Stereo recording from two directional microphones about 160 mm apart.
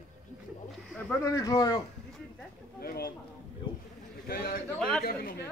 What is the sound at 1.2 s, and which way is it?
Speech, 20° left (ahead or behind).